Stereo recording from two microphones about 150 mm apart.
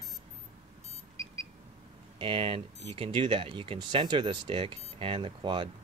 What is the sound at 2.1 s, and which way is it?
Speech, 35° right (ahead or behind).